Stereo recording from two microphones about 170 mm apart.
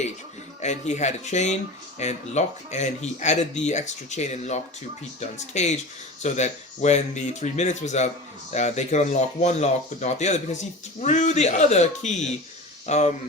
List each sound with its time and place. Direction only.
0.6 s speech: 45° left (ahead or behind)